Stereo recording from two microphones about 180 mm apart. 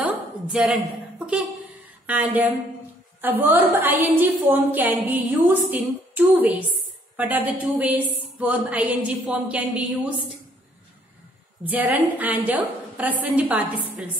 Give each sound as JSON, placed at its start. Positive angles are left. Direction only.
{"t": 0.0, "sound": "a sound", "side_deg": -5}
{"t": 2.0, "sound": "a woman's voice", "side_deg": -10}
{"t": 11.7, "sound": "a woman's voice", "side_deg": -10}